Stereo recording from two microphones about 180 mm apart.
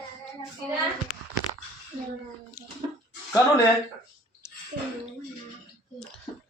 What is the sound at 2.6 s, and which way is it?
Bathtub, 20° left (ahead or behind).